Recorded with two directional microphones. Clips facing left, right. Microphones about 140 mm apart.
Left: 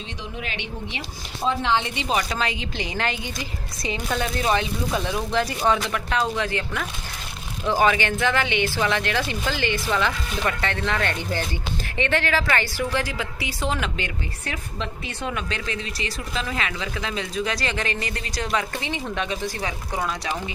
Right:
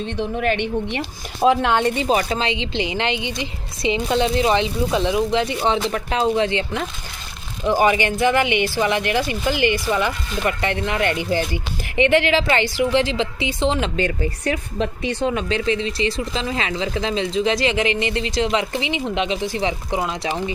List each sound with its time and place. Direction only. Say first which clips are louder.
0.0 s speech: right 12 dB; 55° right (ahead or behind); by 2.8 s 25° right (ahead or behind)
3.8 s speech: right 7 dB; 25° right (ahead or behind)
7.6 s speech: right 3 dB; 15° right (ahead or behind)